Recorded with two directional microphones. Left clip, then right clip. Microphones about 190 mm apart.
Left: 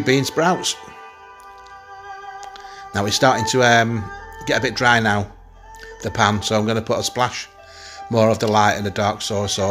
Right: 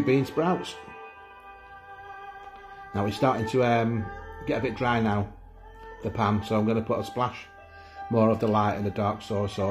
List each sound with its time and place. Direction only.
0.0 s speech: 25° left (ahead or behind)
2.9 s speech: 25° left (ahead or behind)